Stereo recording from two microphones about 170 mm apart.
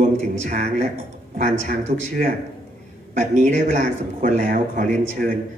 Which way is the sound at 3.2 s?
45° right (ahead or behind).